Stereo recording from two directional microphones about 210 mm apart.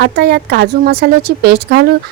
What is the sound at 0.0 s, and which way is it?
Speech, 50° right (ahead or behind).